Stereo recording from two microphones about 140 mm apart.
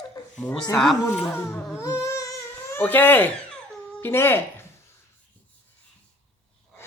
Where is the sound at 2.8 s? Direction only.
15° left (ahead or behind).